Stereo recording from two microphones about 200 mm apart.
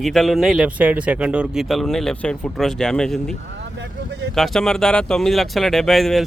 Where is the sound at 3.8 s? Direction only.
60° right (ahead or behind).